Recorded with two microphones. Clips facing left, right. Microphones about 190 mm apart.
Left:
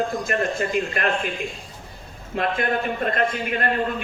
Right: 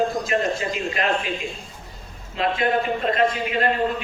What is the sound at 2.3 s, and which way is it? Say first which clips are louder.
A man's voice: right 2 dB; 55° left (ahead or behind).